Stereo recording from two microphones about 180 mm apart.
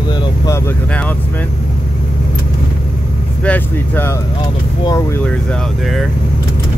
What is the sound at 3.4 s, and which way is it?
Speech, 10° left (ahead or behind).